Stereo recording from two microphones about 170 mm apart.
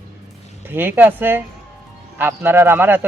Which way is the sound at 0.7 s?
10° right (ahead or behind).